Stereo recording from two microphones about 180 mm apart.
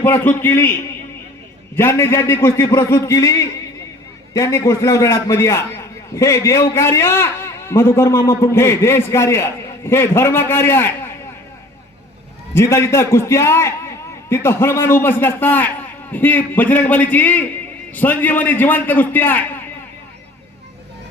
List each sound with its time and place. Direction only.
0.0 s a man's voice: 10° left (ahead or behind)
1.7 s a man's voice: 15° left (ahead or behind)
4.4 s a man's voice: 15° left (ahead or behind)
12.5 s a man's voice: 15° left (ahead or behind)